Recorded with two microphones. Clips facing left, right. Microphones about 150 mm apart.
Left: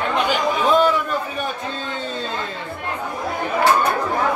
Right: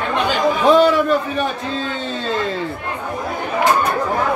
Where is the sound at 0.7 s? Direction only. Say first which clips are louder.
Right 4 dB; 75° right (ahead or behind).